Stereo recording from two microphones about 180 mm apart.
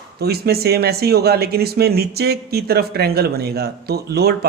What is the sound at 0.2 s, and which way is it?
Speech, 60° right (ahead or behind).